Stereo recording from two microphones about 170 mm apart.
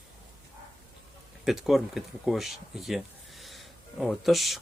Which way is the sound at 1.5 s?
Centre (ahead or behind).